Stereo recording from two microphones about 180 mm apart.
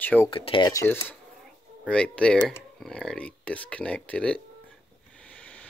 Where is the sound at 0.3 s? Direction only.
25° left (ahead or behind); by 4.4 s 5° left (ahead or behind).